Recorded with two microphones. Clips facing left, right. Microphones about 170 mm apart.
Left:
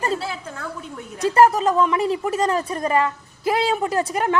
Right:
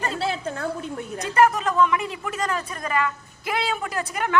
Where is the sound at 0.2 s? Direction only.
55° right (ahead or behind).